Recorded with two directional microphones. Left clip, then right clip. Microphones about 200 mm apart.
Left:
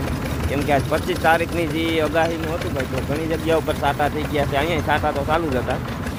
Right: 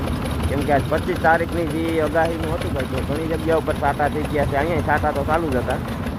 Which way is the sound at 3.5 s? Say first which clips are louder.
Even; 10° left (ahead or behind).